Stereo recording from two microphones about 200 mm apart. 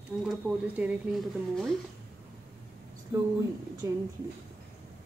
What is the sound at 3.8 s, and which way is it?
Speech, 15° right (ahead or behind).